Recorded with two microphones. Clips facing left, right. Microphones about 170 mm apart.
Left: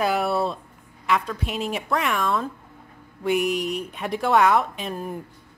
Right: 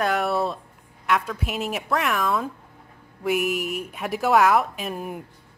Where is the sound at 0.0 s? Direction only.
Centre (ahead or behind).